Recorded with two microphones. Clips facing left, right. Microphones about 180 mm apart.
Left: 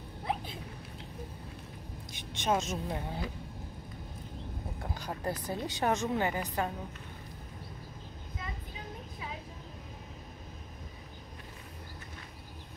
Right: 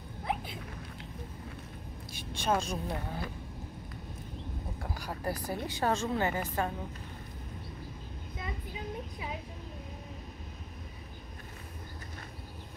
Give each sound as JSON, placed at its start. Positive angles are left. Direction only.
{"t": 2.1, "sound": "a woman's voice", "side_deg": 20}
{"t": 4.9, "sound": "a woman's voice", "side_deg": 20}